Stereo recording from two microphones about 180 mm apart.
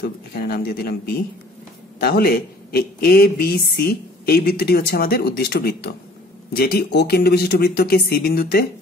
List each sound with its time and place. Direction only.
0.0 s speech: 60° left (ahead or behind)